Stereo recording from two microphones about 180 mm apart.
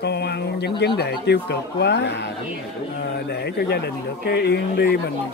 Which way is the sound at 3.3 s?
65° left (ahead or behind).